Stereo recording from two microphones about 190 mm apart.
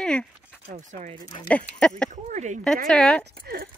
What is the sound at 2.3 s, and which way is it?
Speech, 40° right (ahead or behind).